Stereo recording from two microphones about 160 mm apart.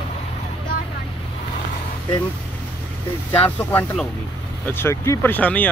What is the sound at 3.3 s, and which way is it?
Speech, 10° left (ahead or behind).